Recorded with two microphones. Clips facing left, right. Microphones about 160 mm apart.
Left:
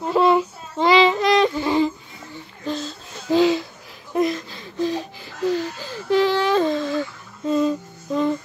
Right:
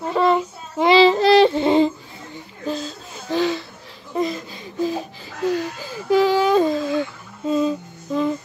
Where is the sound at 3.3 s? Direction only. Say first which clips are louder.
Left 4 dB; 15° left (ahead or behind).